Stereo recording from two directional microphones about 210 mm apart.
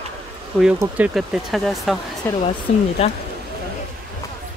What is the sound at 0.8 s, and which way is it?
Speech, 5° right (ahead or behind).